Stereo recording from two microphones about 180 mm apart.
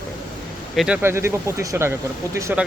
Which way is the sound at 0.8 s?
10° right (ahead or behind).